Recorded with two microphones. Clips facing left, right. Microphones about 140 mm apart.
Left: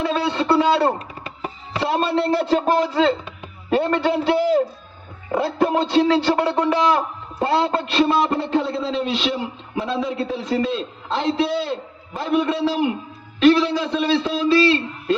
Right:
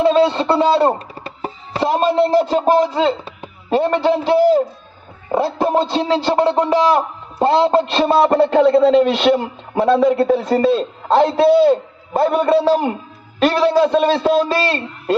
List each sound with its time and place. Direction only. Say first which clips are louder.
0.0 s speech: right 8 dB; 30° right (ahead or behind)
1.8 s music: right 5 dB; 20° right (ahead or behind)
3.7 s speech: right 4 dB; 15° right (ahead or behind)
5.4 s a man's voice: right 3 dB; 35° right (ahead or behind)
5.9 s music: even; 20° right (ahead or behind)
6.7 s a man's voice: right 4 dB; 30° right (ahead or behind)
8.4 s a man's voice: right 10 dB; 65° right (ahead or behind); by 15.1 s 45° right (ahead or behind)